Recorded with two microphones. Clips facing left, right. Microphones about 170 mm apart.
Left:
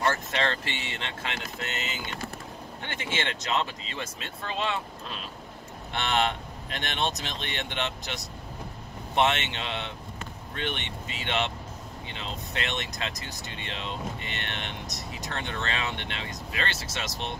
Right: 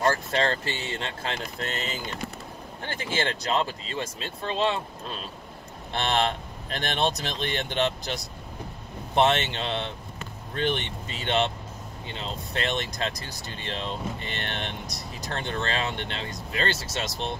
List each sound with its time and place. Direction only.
0.0 s speech: 35° right (ahead or behind)